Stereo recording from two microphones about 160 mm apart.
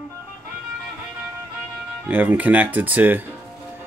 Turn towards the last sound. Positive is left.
turn(degrees=-10)  # may be behind; listen again after turning